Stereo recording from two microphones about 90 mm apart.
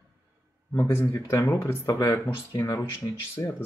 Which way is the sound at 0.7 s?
25° left (ahead or behind).